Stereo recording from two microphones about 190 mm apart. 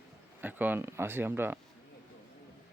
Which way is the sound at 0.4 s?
10° right (ahead or behind).